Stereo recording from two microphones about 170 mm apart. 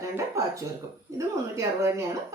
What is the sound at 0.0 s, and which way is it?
Speech, 20° right (ahead or behind).